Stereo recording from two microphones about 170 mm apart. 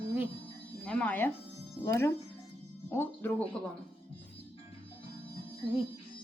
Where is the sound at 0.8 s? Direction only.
10° left (ahead or behind).